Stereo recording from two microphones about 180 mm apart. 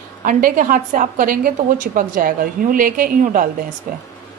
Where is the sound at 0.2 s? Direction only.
50° right (ahead or behind).